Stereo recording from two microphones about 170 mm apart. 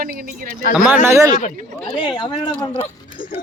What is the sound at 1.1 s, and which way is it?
Speech, 15° right (ahead or behind).